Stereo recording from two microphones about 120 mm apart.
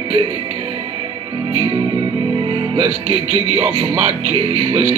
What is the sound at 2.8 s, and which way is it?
Speech, 55° right (ahead or behind).